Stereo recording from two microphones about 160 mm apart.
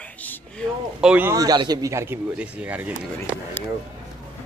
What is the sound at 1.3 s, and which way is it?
Speech, 25° right (ahead or behind).